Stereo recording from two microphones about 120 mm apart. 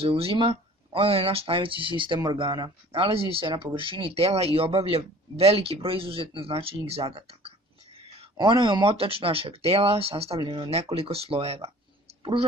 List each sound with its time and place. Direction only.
0.0 s speech: 55° right (ahead or behind)
8.4 s speech: 40° right (ahead or behind)
10.4 s speech: 35° right (ahead or behind)
10.7 s speech: 60° right (ahead or behind)